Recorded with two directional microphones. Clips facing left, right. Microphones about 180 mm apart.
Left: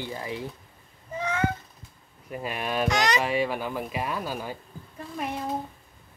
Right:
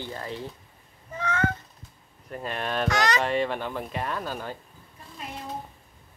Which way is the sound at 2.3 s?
10° left (ahead or behind).